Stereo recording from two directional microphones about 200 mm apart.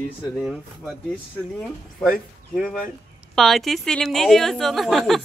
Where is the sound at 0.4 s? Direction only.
5° right (ahead or behind).